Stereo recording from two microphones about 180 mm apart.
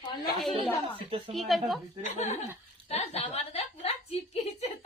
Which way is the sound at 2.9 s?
35° left (ahead or behind).